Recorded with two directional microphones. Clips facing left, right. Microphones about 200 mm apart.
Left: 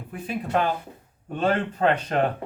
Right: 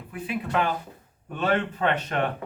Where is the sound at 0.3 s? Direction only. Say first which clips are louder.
Left 2 dB; 40° left (ahead or behind).